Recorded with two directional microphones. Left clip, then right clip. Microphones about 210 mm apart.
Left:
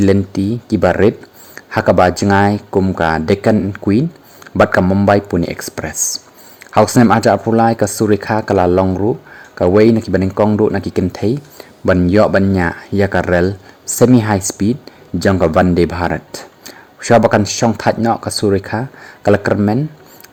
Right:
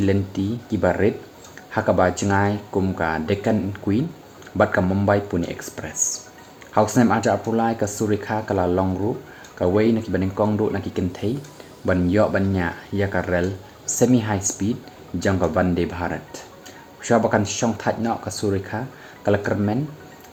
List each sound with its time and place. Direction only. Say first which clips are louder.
0.0 s speech: left 8 dB; 45° left (ahead or behind)